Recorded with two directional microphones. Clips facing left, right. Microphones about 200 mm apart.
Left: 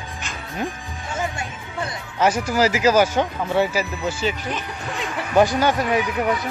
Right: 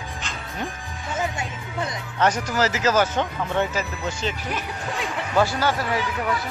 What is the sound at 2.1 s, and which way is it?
Speech, 10° left (ahead or behind).